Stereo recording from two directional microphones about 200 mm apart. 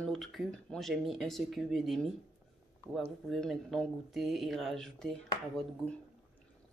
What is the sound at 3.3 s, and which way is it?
Speech, centre (ahead or behind).